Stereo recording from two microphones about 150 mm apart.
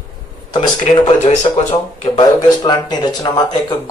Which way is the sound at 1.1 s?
45° left (ahead or behind).